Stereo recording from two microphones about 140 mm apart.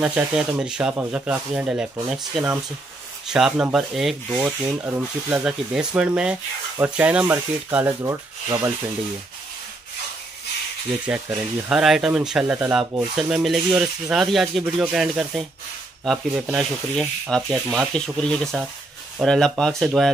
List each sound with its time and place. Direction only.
0.0 s rub: 5° right (ahead or behind)
3.3 s speech: 5° right (ahead or behind)
3.7 s rub: centre (ahead or behind); by 8.7 s 20° right (ahead or behind)
11.1 s speech: 5° right (ahead or behind)